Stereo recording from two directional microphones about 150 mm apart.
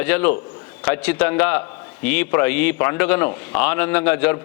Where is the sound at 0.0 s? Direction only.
10° left (ahead or behind).